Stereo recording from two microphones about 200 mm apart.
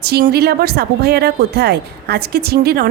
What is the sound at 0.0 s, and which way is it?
A woman's voice, 50° right (ahead or behind).